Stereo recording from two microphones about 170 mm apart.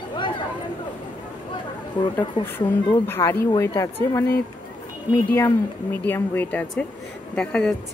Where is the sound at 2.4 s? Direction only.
30° left (ahead or behind).